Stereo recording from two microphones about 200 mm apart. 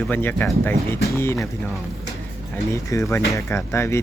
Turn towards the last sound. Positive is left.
turn(degrees=15)  # may be behind; listen again after turning